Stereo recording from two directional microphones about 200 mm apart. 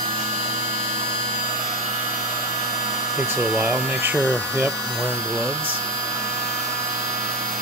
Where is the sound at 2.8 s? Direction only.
20° right (ahead or behind).